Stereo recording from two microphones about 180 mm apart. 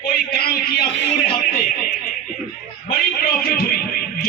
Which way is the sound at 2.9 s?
55° left (ahead or behind).